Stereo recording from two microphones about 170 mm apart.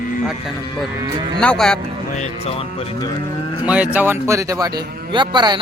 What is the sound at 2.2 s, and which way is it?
Speech, 35° left (ahead or behind).